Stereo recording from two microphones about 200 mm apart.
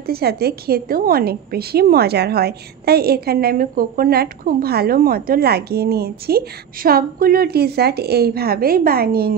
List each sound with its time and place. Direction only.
0.0 s a woman's voice: 50° right (ahead or behind)